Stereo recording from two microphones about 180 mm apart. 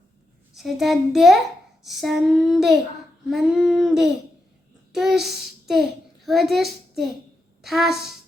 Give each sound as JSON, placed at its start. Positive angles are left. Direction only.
{"t": 0.5, "sound": "child singing", "side_deg": 0}
{"t": 6.2, "sound": "a child's voice", "side_deg": 0}
{"t": 7.6, "sound": "child singing", "side_deg": 0}